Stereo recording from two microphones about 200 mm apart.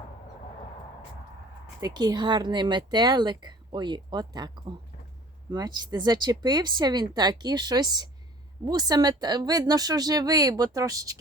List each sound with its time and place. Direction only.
1.8 s speech: 20° right (ahead or behind)